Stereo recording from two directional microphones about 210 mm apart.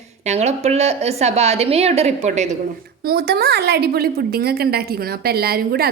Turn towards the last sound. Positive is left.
turn(degrees=-45)  # may be behind; listen again after turning